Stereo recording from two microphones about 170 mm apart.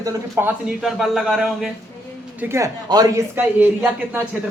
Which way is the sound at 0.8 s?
Centre (ahead or behind).